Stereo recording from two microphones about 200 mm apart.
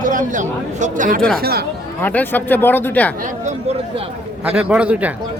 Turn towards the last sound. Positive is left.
turn(degrees=-5)  # may be behind; listen again after turning